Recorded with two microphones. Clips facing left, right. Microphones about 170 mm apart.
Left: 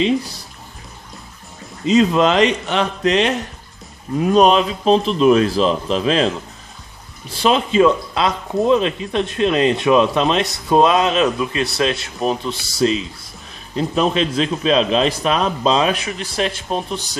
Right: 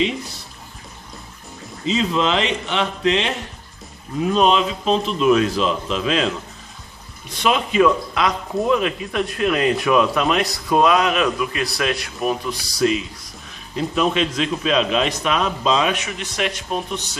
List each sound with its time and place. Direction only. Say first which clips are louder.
1.9 s a man's voice: left 6 dB; 50° left (ahead or behind); by 17.0 s 35° left (ahead or behind)